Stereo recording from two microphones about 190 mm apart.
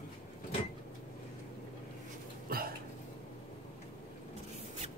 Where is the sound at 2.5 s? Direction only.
50° right (ahead or behind).